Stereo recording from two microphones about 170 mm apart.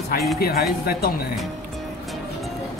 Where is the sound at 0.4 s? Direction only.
65° left (ahead or behind).